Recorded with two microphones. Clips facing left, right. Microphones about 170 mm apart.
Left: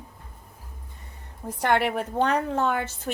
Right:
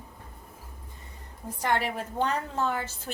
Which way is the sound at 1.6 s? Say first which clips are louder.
Left 5 dB; 65° left (ahead or behind).